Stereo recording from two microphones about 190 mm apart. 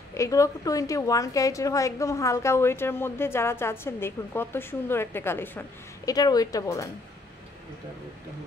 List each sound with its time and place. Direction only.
0.1 s a woman's voice: 15° left (ahead or behind)